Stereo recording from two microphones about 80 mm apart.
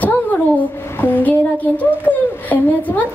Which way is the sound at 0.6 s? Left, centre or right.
Left.